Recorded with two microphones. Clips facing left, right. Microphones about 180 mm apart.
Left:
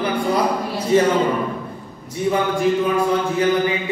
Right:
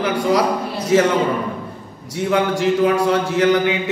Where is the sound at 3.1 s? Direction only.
80° right.